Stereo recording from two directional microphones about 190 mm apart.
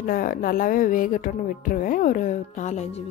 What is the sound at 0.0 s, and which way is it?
A woman's voice, 50° left (ahead or behind).